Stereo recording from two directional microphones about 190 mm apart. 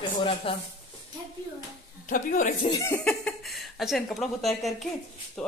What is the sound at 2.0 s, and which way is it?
Speech, 45° left (ahead or behind).